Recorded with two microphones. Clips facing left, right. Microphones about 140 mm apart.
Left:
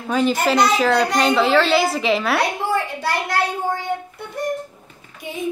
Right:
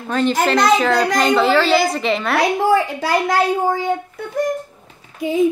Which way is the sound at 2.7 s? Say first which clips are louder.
Right 5 dB; 90° right.